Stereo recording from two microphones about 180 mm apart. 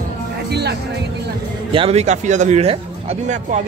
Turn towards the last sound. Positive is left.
turn(degrees=-40)  # may be behind; listen again after turning